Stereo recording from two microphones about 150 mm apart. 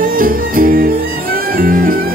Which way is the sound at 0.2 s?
70° right (ahead or behind).